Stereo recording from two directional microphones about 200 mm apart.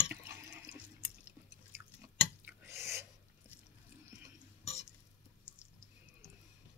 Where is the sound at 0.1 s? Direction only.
15° right (ahead or behind).